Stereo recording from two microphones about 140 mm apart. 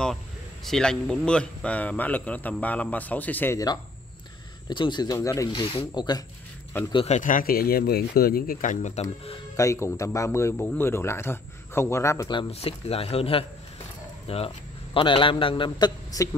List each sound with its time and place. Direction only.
0.7 s a man's voice: 5° left (ahead or behind)
3.5 s speech: 30° left (ahead or behind)
5.5 s a man's voice: 35° left (ahead or behind)
6.7 s a man's voice: 15° left (ahead or behind)
7.1 s speech: 65° left (ahead or behind)
9.6 s speech: 20° left (ahead or behind)
12.4 s a man's voice: 50° left (ahead or behind); by 16.3 s 30° left (ahead or behind)